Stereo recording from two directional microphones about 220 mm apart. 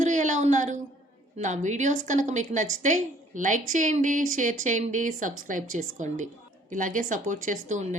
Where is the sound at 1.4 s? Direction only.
35° right (ahead or behind).